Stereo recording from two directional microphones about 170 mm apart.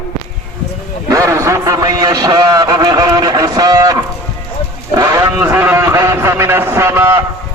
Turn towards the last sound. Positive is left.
turn(degrees=-15)  # may be behind; listen again after turning